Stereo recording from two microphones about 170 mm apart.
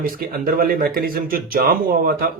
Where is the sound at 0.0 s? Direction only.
60° right (ahead or behind).